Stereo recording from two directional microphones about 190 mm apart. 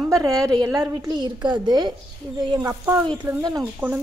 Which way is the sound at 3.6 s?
5° right (ahead or behind).